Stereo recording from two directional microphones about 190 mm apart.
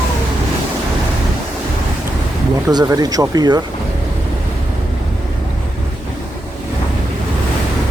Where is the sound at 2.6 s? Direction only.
20° right (ahead or behind).